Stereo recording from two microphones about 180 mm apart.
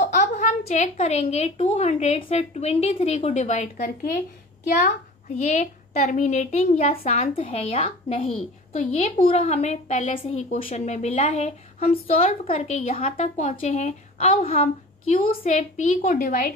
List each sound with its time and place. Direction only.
0.1 s a woman's voice: 40° left (ahead or behind)
3.8 s speech: 55° left (ahead or behind)
5.3 s a woman's voice: 40° left (ahead or behind)
10.2 s a woman's voice: 35° left (ahead or behind); by 16.5 s 50° left (ahead or behind)